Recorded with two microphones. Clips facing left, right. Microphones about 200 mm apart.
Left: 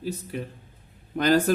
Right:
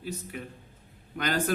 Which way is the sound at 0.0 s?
35° left (ahead or behind).